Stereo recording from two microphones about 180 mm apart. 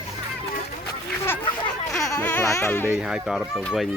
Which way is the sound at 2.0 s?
15° left (ahead or behind).